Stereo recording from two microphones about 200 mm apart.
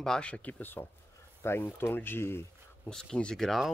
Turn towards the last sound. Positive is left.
turn(degrees=0)  # may be behind; listen again after turning